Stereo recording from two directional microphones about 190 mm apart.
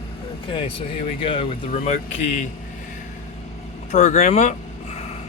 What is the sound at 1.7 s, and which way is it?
Speech, 40° left (ahead or behind).